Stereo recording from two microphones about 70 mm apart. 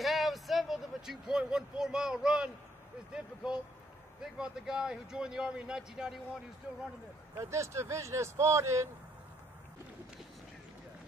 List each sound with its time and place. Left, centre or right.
0.0 s a man's voice: centre
7.3 s speech: right